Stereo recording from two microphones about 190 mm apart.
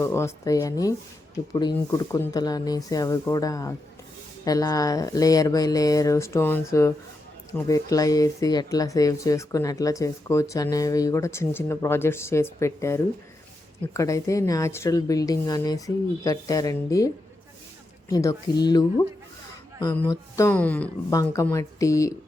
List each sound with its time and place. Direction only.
0.0 s speech: 15° left (ahead or behind)
18.1 s speech: 15° left (ahead or behind)
20.0 s speech: 15° left (ahead or behind)